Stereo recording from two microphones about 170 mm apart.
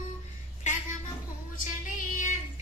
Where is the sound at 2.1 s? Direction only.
50° left (ahead or behind).